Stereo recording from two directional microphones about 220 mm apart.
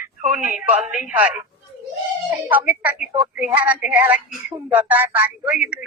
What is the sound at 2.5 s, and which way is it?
Speech, 10° right (ahead or behind).